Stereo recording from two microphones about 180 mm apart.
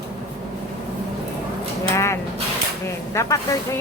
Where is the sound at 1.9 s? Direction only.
15° left (ahead or behind).